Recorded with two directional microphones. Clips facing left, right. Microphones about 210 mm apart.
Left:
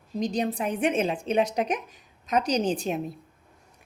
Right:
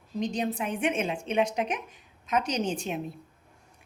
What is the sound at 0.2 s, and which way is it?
A woman's voice, 35° left (ahead or behind).